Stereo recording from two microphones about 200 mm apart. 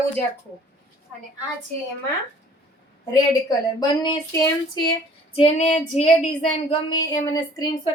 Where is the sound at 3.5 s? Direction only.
20° left (ahead or behind).